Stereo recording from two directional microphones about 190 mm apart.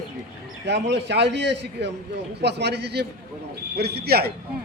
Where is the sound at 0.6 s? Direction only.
65° right (ahead or behind).